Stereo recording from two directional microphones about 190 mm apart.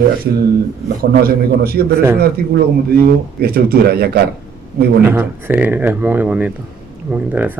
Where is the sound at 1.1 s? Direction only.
50° right (ahead or behind).